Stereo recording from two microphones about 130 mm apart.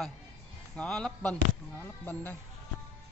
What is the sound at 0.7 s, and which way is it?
Speech, 5° left (ahead or behind).